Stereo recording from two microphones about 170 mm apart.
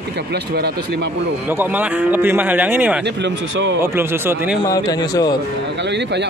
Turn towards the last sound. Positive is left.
turn(degrees=20)  # may be behind; listen again after turning